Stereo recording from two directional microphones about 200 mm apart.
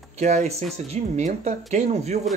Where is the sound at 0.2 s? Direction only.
35° right (ahead or behind).